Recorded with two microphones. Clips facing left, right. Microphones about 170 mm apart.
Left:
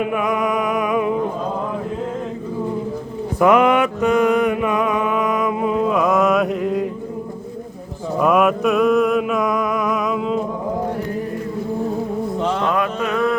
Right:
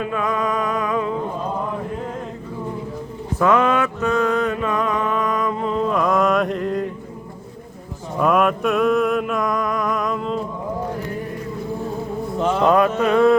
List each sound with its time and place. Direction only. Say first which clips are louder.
0.0 s music: left 3 dB; 15° left (ahead or behind)
3.3 s mantra: left 3 dB; 15° left (ahead or behind)
8.2 s mantra: left 2 dB; 5° left (ahead or behind)
12.7 s a sound: right 4 dB; 35° right (ahead or behind)